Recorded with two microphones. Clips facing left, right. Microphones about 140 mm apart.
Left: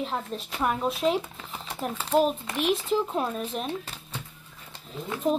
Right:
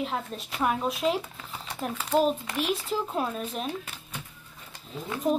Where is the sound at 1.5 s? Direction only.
10° left (ahead or behind).